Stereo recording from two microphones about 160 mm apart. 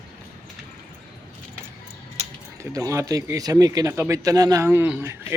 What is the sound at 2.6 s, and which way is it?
Speech, 20° right (ahead or behind).